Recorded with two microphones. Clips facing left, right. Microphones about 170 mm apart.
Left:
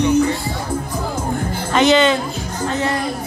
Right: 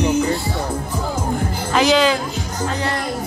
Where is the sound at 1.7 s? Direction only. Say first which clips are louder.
Left 2 dB; centre (ahead or behind).